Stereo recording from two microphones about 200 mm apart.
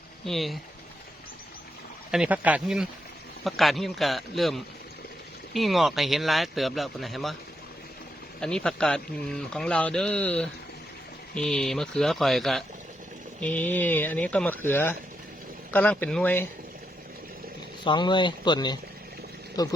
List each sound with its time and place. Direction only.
0.3 s a man's voice: centre (ahead or behind)
2.0 s a man's voice: 5° right (ahead or behind)
8.4 s a man's voice: 5° left (ahead or behind)
17.8 s speech: 20° left (ahead or behind)